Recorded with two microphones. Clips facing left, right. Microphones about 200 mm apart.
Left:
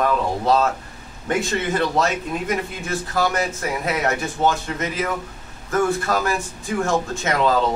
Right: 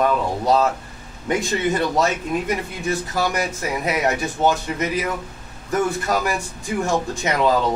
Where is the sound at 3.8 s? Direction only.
15° right (ahead or behind).